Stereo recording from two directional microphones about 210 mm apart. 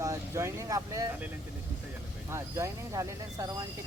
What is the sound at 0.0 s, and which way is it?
Speech, 15° right (ahead or behind).